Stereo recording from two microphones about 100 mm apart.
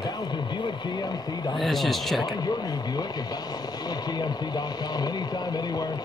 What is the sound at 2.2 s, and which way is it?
Speech, 40° left (ahead or behind).